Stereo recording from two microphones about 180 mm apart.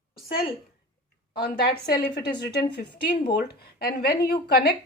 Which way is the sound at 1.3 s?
60° left (ahead or behind).